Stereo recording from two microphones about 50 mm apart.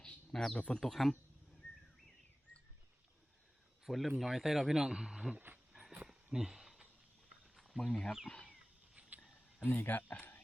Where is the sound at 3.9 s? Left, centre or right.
Centre.